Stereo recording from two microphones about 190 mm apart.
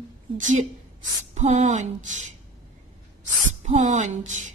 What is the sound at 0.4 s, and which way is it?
Speech, 40° right (ahead or behind).